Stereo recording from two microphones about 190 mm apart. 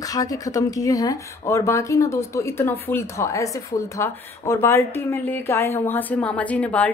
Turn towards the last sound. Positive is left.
turn(degrees=5)  # may be behind; listen again after turning